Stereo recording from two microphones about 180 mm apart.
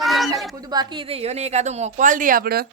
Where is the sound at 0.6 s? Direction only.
20° right (ahead or behind); by 2.6 s 55° right (ahead or behind).